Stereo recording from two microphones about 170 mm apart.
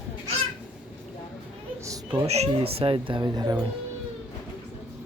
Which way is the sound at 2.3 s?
35° right (ahead or behind).